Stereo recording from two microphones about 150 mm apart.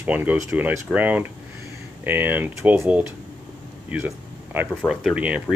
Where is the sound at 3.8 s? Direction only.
10° right (ahead or behind).